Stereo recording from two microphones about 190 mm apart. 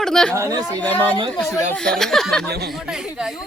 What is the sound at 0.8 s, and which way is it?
A woman's voice, 10° left (ahead or behind).